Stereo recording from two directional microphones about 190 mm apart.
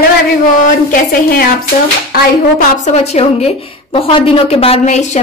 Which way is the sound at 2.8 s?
35° left (ahead or behind).